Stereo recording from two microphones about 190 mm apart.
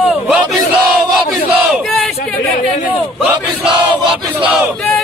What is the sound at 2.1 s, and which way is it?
Speech, 30° left (ahead or behind).